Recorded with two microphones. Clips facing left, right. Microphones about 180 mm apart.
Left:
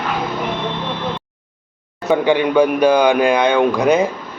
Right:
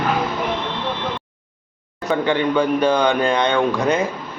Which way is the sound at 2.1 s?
10° left (ahead or behind).